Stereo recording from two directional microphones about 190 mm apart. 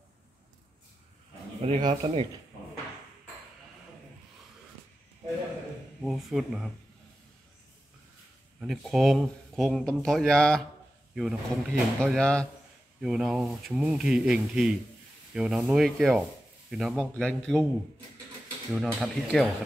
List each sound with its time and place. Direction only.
1.6 s speech: 30° right (ahead or behind)
6.0 s speech: centre (ahead or behind)
8.5 s speech: centre (ahead or behind)
18.7 s speech: centre (ahead or behind)